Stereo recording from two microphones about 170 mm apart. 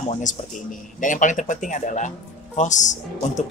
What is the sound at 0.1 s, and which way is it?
Speech, 50° left (ahead or behind).